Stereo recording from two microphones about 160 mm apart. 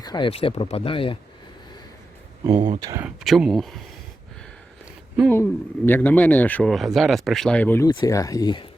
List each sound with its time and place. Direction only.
0.0 s speech: 30° left (ahead or behind)
2.4 s speech: 25° right (ahead or behind)
3.0 s speech: centre (ahead or behind)
5.3 s speech: 15° left (ahead or behind)
7.9 s speech: 25° left (ahead or behind)